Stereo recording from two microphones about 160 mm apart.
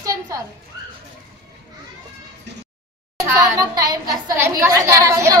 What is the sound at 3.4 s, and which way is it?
A woman's voice, 25° right (ahead or behind).